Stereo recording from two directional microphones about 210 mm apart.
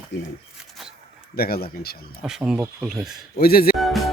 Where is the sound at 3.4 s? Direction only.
45° left (ahead or behind).